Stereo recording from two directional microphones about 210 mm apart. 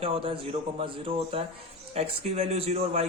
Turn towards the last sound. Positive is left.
turn(degrees=-30)  # may be behind; listen again after turning